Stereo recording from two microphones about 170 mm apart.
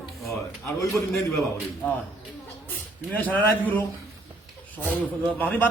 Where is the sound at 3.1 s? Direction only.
10° left (ahead or behind).